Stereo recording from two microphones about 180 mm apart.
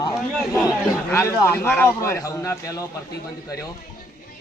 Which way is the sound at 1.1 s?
15° left (ahead or behind).